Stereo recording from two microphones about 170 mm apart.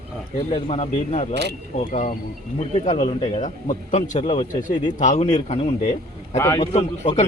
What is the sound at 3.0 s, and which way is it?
A man's voice, 35° left (ahead or behind).